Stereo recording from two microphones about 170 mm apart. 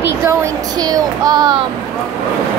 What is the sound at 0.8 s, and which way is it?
Child singing, 20° right (ahead or behind).